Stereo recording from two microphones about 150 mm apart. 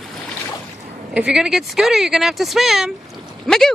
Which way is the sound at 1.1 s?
5° right (ahead or behind).